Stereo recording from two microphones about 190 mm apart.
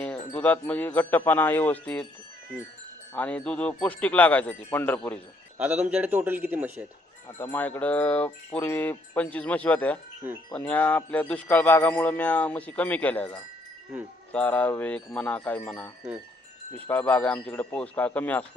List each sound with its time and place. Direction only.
0.0 s speech: 5° left (ahead or behind)
3.2 s speech: 10° left (ahead or behind)
5.5 s a man's voice: 10° right (ahead or behind)
7.3 s speech: 10° left (ahead or behind)